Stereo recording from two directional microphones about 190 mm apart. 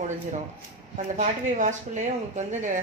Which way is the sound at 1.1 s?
40° right (ahead or behind).